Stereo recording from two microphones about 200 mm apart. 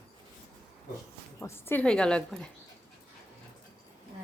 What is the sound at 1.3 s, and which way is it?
A woman's voice, 10° left (ahead or behind).